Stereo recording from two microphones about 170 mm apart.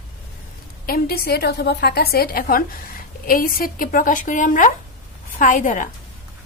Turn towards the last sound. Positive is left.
turn(degrees=50)  # may be behind; listen again after turning